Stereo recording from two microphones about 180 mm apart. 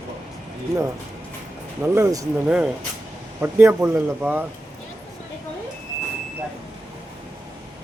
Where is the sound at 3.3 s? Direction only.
10° right (ahead or behind).